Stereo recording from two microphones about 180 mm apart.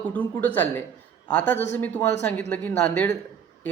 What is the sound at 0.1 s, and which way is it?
A man's voice, 10° left (ahead or behind).